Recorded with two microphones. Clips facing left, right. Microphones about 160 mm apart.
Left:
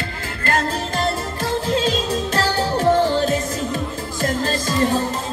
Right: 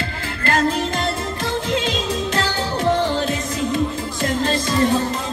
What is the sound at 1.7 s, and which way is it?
Music, 40° left (ahead or behind).